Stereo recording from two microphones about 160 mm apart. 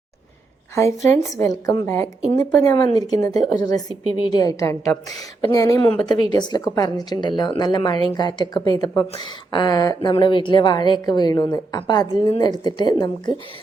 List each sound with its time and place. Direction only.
0.8 s speech: 20° left (ahead or behind)